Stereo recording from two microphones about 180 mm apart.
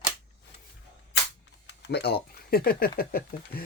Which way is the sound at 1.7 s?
70° left (ahead or behind).